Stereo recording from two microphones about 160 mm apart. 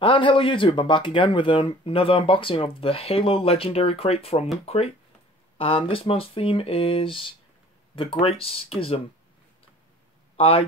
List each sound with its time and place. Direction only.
0.0 s speech: 30° left (ahead or behind)
10.3 s speech: 35° left (ahead or behind)